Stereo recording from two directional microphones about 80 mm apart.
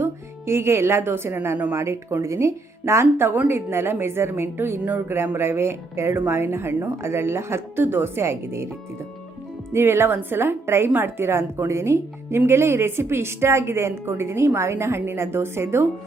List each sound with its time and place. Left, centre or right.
0.0 s a woman's voice: right
1.7 s a woman's voice: right
9.7 s a woman's voice: right